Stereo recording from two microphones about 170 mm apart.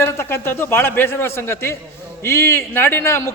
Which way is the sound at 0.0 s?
15° left (ahead or behind).